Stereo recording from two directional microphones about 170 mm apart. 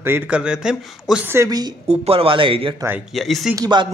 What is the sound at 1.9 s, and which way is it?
Speech, 35° right (ahead or behind).